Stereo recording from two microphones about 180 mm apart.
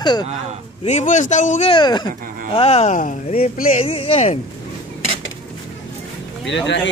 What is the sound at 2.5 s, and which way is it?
Speech, 35° left (ahead or behind).